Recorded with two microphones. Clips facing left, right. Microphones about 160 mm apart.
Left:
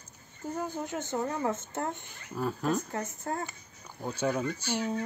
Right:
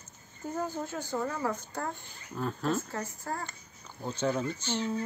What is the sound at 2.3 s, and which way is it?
Speech, 10° left (ahead or behind).